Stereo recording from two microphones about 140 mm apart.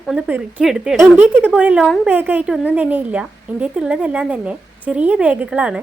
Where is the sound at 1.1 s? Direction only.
15° right (ahead or behind).